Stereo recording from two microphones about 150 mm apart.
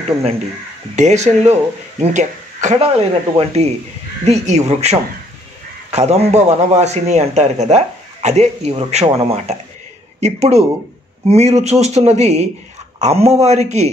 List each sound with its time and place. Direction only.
0.9 s speech: 50° right (ahead or behind)
2.8 s a man's voice: 40° right (ahead or behind)